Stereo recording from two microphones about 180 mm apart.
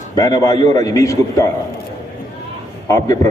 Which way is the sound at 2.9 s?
20° left (ahead or behind).